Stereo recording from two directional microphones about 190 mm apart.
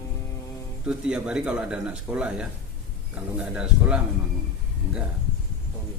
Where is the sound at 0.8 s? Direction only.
5° right (ahead or behind).